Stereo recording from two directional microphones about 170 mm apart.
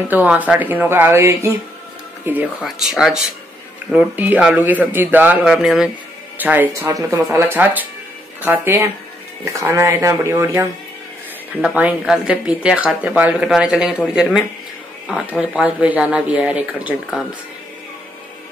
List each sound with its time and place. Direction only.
0.1 s speech: 10° right (ahead or behind)